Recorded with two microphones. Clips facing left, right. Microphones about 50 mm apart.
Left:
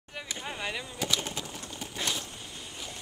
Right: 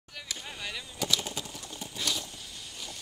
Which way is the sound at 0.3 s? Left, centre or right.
Left.